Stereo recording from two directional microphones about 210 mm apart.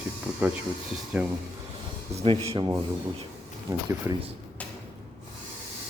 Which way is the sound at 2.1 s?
25° right (ahead or behind).